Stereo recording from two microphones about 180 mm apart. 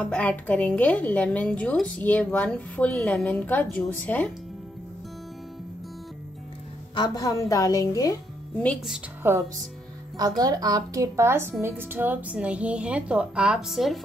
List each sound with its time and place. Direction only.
0.0 s a woman's voice: 10° left (ahead or behind)
7.0 s a woman's voice: 20° left (ahead or behind)
8.5 s speech: centre (ahead or behind)
9.2 s a woman's voice: 10° right (ahead or behind)